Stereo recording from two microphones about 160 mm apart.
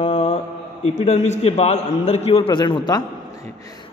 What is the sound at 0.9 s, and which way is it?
A man's voice, 45° left (ahead or behind).